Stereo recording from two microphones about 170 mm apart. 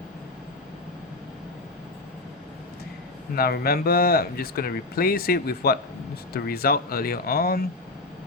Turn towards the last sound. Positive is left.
turn(degrees=65)  # may be behind; listen again after turning